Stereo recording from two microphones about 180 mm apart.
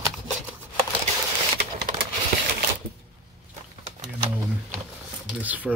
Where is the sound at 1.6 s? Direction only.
60° right (ahead or behind).